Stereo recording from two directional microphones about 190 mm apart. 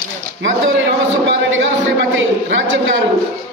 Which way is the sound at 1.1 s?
75° right (ahead or behind).